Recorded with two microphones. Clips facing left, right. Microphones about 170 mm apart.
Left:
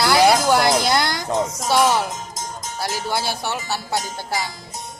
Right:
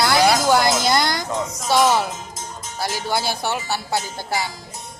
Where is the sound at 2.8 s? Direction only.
5° left (ahead or behind).